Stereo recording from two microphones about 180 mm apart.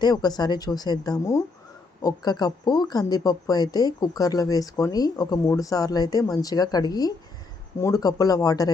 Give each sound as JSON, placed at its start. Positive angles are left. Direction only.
{"t": 0.0, "sound": "speech", "side_deg": 20}